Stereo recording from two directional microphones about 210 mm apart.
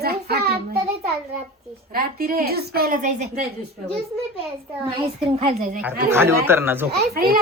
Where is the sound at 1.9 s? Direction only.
45° right (ahead or behind).